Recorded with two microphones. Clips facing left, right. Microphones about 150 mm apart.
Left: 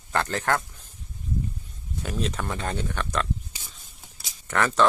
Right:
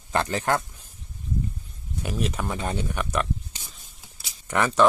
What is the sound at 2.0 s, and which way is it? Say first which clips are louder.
Speech: right 1 dB; 10° right (ahead or behind).